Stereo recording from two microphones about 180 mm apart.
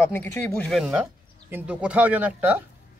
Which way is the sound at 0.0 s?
15° left (ahead or behind).